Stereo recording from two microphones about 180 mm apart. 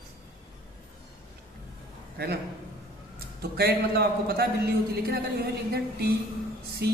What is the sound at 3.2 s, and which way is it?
A man's voice, 60° right (ahead or behind).